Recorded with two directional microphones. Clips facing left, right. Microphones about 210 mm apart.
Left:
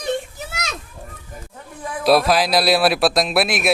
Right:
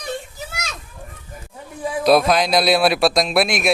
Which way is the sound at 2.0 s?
Centre (ahead or behind).